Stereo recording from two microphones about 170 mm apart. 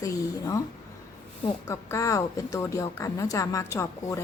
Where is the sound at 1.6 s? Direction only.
15° left (ahead or behind).